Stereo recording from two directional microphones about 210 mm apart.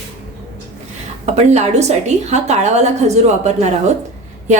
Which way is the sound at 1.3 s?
30° right (ahead or behind).